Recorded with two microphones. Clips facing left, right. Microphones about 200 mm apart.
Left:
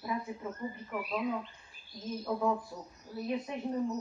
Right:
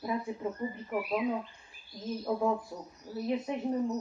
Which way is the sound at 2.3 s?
15° right (ahead or behind).